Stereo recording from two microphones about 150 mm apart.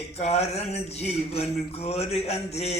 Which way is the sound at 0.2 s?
45° left (ahead or behind).